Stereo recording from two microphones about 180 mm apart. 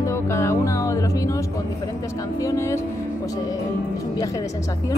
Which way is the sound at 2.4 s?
15° left (ahead or behind).